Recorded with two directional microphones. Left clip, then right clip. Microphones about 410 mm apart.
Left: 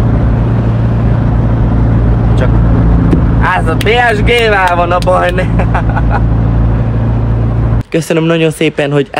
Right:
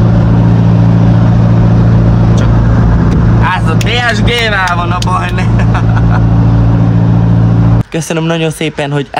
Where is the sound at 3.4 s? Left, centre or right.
Centre.